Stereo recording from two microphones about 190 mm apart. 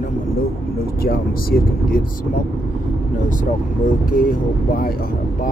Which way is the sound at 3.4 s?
45° left (ahead or behind).